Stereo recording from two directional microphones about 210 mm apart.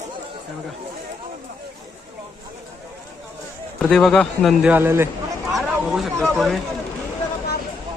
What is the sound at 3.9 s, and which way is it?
A man's voice, centre (ahead or behind).